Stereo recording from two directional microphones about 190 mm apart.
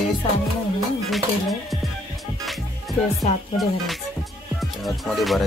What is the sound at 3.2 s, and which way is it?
Music, centre (ahead or behind).